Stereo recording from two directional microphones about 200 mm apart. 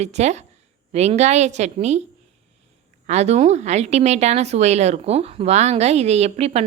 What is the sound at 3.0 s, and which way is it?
A woman's voice, 35° right (ahead or behind).